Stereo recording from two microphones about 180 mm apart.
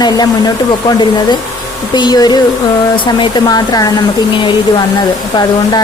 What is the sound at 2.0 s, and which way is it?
Speech, 25° left (ahead or behind).